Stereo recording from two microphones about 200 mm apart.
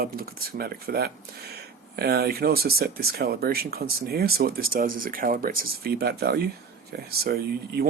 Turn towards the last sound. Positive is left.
turn(degrees=-50)  # may be behind; listen again after turning